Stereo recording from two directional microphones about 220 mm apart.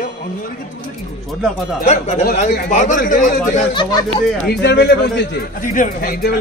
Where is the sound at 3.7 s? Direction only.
20° left (ahead or behind).